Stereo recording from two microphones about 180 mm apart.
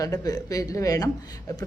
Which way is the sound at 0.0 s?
20° left (ahead or behind).